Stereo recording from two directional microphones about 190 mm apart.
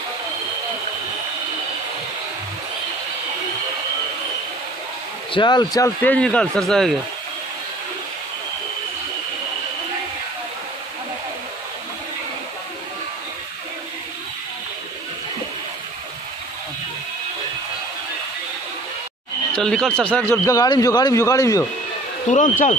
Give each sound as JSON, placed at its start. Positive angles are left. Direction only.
{"t": 5.3, "sound": "speech", "side_deg": 25}
{"t": 6.0, "sound": "a man's voice", "side_deg": 5}
{"t": 19.5, "sound": "speech", "side_deg": 5}
{"t": 22.3, "sound": "speech", "side_deg": 40}